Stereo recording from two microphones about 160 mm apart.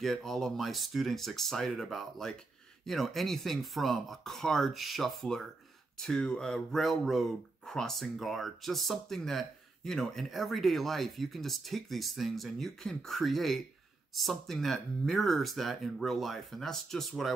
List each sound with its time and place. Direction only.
0.0 s speech: centre (ahead or behind)